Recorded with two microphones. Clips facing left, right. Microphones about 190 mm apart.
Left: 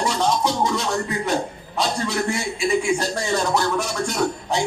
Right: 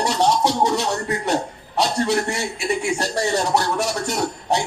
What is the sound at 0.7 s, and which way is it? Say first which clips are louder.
Speech: right 1 dB; 70° right (ahead or behind).